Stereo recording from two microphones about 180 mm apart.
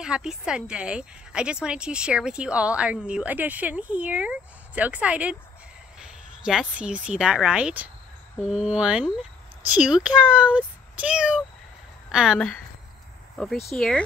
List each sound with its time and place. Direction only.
0.0 s a woman's voice: 5° right (ahead or behind)